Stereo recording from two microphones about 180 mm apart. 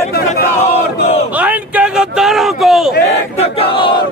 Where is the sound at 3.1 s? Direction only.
35° left (ahead or behind).